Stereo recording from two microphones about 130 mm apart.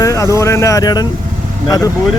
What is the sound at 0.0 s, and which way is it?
Speech, 25° left (ahead or behind).